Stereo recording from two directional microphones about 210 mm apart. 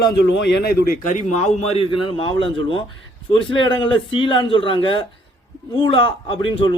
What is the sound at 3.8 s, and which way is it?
Speech, 25° left (ahead or behind).